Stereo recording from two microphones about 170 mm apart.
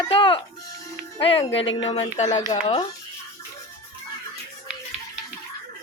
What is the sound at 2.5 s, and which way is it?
Speech, 40° left (ahead or behind).